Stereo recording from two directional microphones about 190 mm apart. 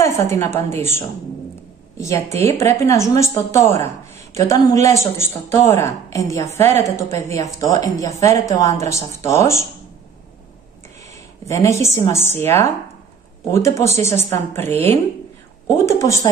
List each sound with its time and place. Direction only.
0.0 s a woman's voice: 15° left (ahead or behind)
2.0 s a woman's voice: 15° left (ahead or behind)
11.4 s a woman's voice: 15° left (ahead or behind)